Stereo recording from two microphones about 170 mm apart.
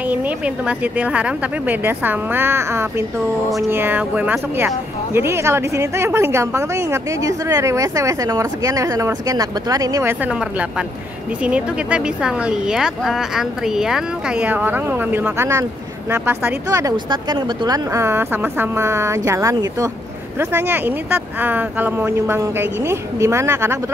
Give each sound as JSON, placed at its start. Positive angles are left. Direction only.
{"t": 0.1, "sound": "speech", "side_deg": -10}
{"t": 10.2, "sound": "speech", "side_deg": -10}